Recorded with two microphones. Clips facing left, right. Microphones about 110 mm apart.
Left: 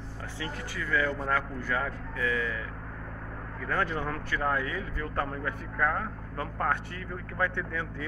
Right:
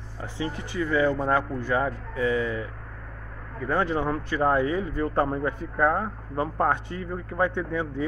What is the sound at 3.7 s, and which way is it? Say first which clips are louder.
Speech: right 6 dB; 20° right (ahead or behind).